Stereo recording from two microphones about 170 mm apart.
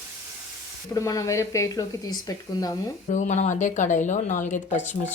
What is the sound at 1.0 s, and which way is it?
A woman's voice, 20° left (ahead or behind).